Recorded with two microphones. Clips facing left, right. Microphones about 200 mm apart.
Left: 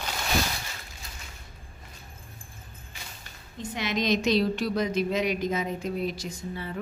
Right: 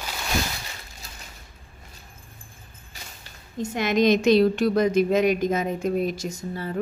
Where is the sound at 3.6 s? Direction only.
50° right (ahead or behind).